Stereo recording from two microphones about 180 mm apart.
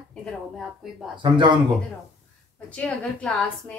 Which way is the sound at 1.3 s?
25° right (ahead or behind).